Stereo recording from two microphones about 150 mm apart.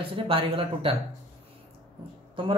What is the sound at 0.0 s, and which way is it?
Speech, 35° right (ahead or behind).